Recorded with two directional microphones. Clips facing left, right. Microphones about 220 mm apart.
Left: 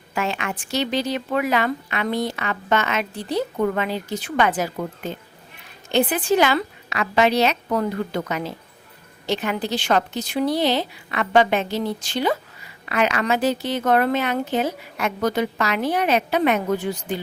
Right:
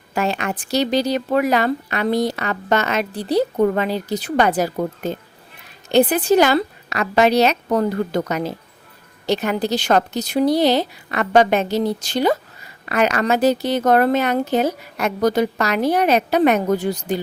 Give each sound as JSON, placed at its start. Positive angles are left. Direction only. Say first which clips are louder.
{"t": 0.1, "sound": "a woman's voice", "louder": "right 4 dB", "side_deg": -40}